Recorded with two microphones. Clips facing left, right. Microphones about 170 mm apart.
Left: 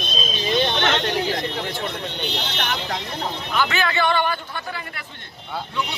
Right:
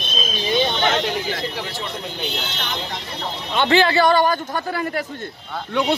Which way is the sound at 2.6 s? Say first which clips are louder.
Left 4 dB; 70° left (ahead or behind).